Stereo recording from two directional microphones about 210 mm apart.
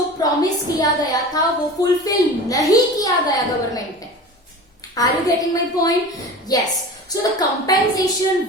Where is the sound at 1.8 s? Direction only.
15° left (ahead or behind).